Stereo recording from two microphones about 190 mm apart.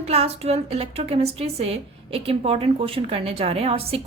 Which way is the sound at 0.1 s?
30° right (ahead or behind).